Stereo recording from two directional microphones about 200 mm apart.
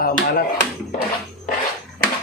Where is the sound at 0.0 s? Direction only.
45° left (ahead or behind).